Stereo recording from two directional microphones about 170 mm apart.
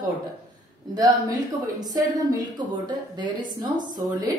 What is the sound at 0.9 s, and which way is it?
A woman's voice, 20° right (ahead or behind).